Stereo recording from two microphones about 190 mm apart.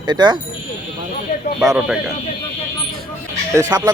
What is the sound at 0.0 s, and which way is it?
Speech, 25° right (ahead or behind).